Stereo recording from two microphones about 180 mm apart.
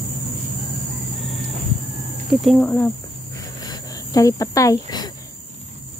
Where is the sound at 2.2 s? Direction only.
Centre (ahead or behind).